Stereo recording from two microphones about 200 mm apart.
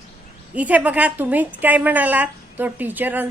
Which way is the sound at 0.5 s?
5° right (ahead or behind).